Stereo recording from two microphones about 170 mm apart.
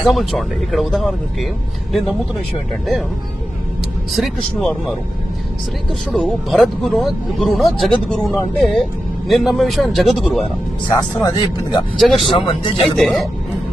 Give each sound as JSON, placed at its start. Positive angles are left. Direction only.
{"t": 0.0, "sound": "speech", "side_deg": 0}
{"t": 4.1, "sound": "speech", "side_deg": 0}
{"t": 6.1, "sound": "speech", "side_deg": 0}
{"t": 10.8, "sound": "speech", "side_deg": 20}
{"t": 11.9, "sound": "speech", "side_deg": 0}
{"t": 12.3, "sound": "speech", "side_deg": 30}
{"t": 12.8, "sound": "speech", "side_deg": 0}